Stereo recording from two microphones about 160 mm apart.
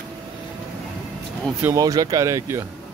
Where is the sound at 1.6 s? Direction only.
20° right (ahead or behind).